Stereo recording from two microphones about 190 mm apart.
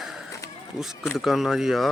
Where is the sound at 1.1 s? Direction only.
Centre (ahead or behind).